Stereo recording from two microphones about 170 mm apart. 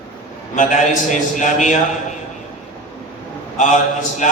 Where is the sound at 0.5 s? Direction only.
45° left (ahead or behind).